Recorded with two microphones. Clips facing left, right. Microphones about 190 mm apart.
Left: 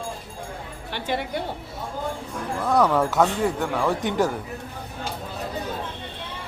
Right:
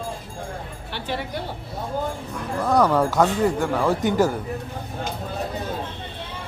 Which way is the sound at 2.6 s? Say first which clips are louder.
Right 1 dB; centre (ahead or behind).